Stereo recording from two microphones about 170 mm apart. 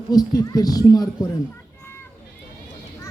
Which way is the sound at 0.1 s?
20° left (ahead or behind).